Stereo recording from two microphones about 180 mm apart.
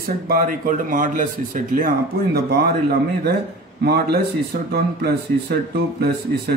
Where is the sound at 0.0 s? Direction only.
55° right (ahead or behind).